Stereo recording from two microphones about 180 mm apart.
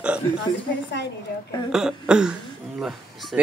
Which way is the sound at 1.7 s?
5° right (ahead or behind).